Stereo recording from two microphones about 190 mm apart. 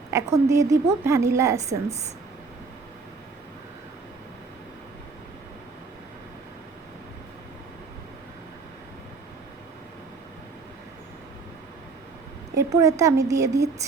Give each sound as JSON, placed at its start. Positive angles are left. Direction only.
{"t": 0.1, "sound": "a woman's voice", "side_deg": -15}
{"t": 12.5, "sound": "a woman's voice", "side_deg": -15}